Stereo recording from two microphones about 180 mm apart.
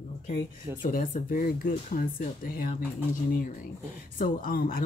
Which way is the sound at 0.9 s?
50° left (ahead or behind).